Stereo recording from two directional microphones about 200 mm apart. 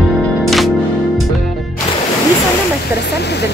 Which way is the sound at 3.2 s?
55° left (ahead or behind).